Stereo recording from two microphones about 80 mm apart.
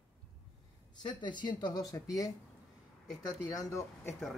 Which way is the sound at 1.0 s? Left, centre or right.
Left.